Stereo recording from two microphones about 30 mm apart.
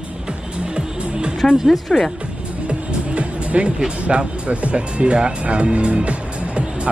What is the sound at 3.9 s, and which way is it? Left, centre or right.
Speech, right.